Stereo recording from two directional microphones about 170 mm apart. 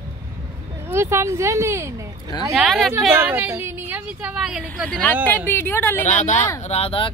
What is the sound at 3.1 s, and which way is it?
A woman's voice, 15° right (ahead or behind).